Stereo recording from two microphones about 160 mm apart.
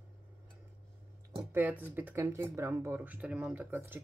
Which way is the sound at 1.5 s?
10° right (ahead or behind).